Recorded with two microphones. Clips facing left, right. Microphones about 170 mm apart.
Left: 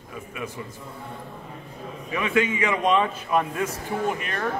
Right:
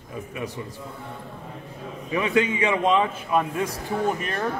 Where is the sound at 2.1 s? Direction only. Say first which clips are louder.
Right 1 dB; 30° right (ahead or behind).